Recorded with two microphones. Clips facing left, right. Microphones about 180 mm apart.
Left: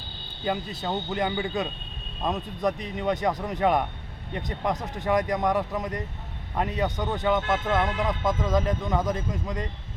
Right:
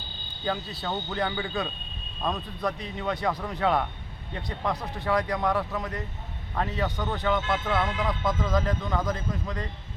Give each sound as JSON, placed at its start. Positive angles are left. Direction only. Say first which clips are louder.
{"t": 0.4, "sound": "speech", "louder": "left 2 dB", "side_deg": 20}